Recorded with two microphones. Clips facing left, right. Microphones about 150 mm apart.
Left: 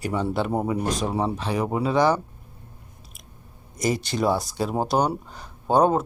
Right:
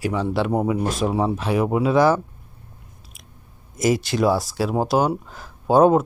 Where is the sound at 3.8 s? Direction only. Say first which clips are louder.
Right 4 dB; 5° right (ahead or behind).